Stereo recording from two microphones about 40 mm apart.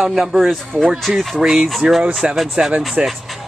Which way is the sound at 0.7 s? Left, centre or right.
Centre.